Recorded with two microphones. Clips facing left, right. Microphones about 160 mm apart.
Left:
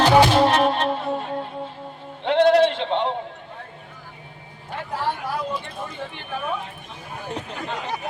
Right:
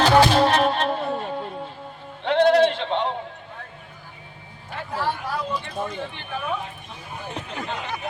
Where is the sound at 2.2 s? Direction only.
20° left (ahead or behind).